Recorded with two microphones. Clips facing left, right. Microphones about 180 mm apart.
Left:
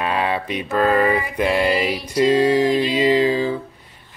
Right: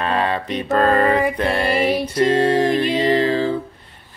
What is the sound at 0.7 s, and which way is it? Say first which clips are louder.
Speech: right 1 dB; 10° left (ahead or behind).